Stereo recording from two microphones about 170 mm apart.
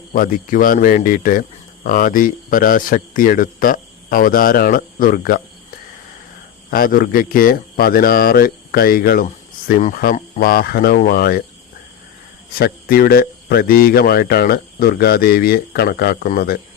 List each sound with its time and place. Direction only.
0.1 s speech: 55° left (ahead or behind)
6.7 s speech: 60° left (ahead or behind)
10.3 s speech: 65° left (ahead or behind)
12.5 s speech: 60° left (ahead or behind)